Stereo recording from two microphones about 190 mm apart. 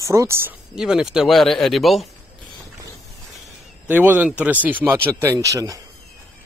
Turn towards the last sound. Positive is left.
turn(degrees=-20)  # may be behind; listen again after turning